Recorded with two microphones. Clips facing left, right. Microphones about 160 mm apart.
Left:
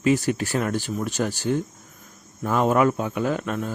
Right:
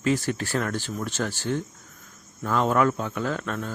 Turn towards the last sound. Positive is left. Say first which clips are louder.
# left 4 dB
turn(degrees=15)  # may be behind; listen again after turning